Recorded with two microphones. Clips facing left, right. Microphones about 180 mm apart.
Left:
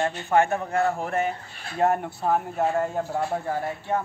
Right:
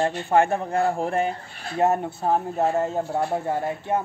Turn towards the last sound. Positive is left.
turn(degrees=-20)  # may be behind; listen again after turning